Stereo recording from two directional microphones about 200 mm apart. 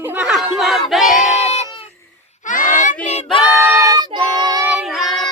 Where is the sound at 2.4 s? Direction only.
40° left (ahead or behind).